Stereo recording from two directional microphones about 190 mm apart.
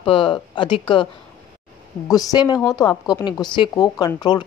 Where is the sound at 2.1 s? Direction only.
20° left (ahead or behind).